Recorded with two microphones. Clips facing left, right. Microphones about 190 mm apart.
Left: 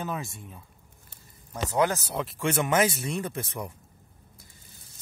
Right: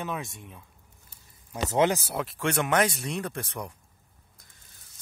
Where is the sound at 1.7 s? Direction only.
25° right (ahead or behind).